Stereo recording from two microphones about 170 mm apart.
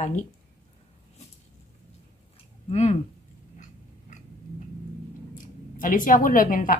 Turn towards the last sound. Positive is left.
turn(degrees=55)  # may be behind; listen again after turning